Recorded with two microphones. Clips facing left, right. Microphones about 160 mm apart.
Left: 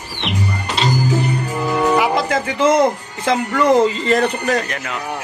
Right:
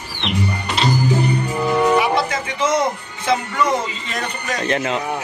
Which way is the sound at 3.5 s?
75° left (ahead or behind).